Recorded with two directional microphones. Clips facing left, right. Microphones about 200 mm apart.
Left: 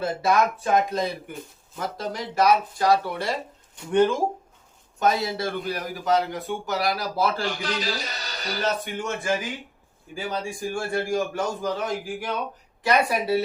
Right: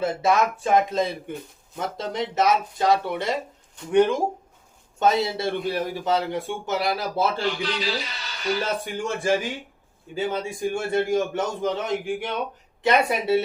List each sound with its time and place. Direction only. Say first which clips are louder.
0.0 s a man's voice: right 1 dB; 20° right (ahead or behind)
4.9 s a man's voice: right 2 dB; 25° right (ahead or behind)
7.4 s a man's voice: right 2 dB; 45° left (ahead or behind)
8.6 s a man's voice: even; 30° right (ahead or behind)